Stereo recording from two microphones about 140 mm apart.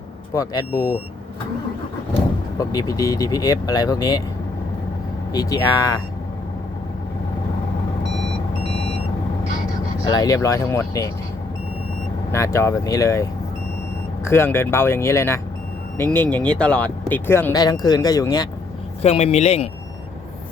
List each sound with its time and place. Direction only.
2.6 s speech: 25° left (ahead or behind)
5.3 s speech: 25° left (ahead or behind)
10.0 s speech: 25° left (ahead or behind)
12.3 s speech: 20° left (ahead or behind)
14.3 s speech: 15° left (ahead or behind)
17.6 s speech: 25° left (ahead or behind)
19.0 s a man's voice: 50° left (ahead or behind)